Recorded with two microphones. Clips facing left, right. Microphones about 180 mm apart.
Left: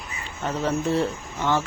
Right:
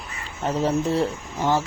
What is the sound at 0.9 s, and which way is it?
Speech, 35° right (ahead or behind).